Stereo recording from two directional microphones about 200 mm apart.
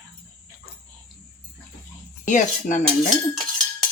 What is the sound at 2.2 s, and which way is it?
Cutlery, 40° left (ahead or behind).